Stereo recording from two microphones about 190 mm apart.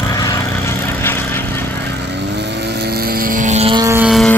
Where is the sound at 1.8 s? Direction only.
65° right (ahead or behind); by 3.8 s 35° right (ahead or behind).